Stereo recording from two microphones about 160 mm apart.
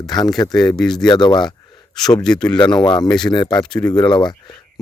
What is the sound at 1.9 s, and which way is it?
Speech, 5° left (ahead or behind).